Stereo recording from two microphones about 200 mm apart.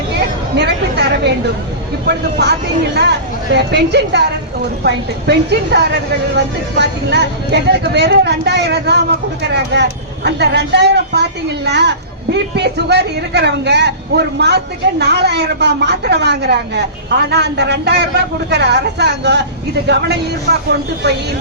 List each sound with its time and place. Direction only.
0.5 s speech: 55° right (ahead or behind)